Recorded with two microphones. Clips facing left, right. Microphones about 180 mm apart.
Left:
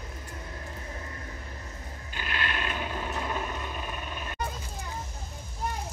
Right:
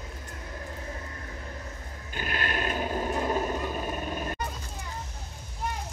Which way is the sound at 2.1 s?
45° right (ahead or behind).